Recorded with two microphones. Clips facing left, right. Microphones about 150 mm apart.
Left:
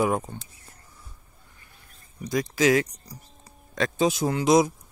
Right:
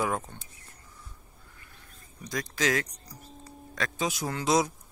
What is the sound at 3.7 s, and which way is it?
Speech, 25° left (ahead or behind).